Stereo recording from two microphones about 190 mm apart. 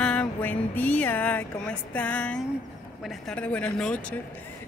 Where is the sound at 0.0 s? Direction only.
5° left (ahead or behind).